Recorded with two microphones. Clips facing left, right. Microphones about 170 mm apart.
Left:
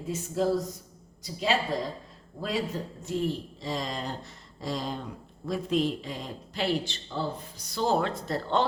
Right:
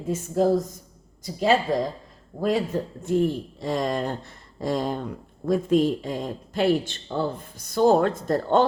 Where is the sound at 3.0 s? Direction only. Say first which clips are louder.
Right 7 dB; 55° right (ahead or behind).